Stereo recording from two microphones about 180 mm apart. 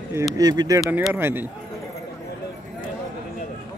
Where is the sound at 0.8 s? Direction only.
5° right (ahead or behind).